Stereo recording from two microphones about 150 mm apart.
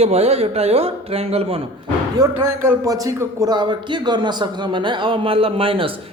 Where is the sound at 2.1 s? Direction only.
20° right (ahead or behind).